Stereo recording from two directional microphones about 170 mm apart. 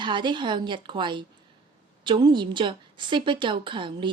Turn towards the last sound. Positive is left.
turn(degrees=-30)  # may be behind; listen again after turning